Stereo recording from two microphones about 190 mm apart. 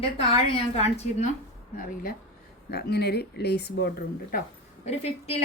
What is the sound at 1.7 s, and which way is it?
Speech, 45° left (ahead or behind).